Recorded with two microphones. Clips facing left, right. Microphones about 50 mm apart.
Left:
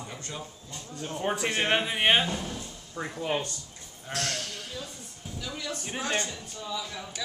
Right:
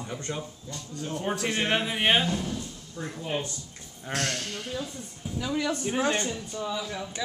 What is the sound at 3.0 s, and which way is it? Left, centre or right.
Speech, left.